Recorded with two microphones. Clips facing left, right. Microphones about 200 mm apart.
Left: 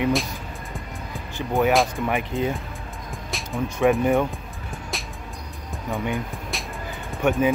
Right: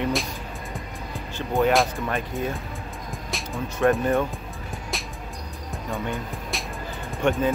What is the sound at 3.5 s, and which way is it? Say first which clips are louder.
Speech: left 2 dB; 15° left (ahead or behind).